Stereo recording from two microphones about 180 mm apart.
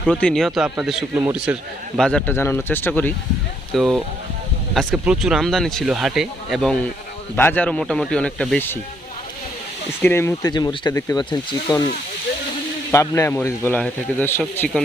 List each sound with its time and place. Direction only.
0.0 s speech: 5° left (ahead or behind)
2.0 s a man's voice: 5° left (ahead or behind)
3.8 s a man's voice: centre (ahead or behind)
10.0 s speech: 10° left (ahead or behind)
12.9 s a man's voice: 15° left (ahead or behind)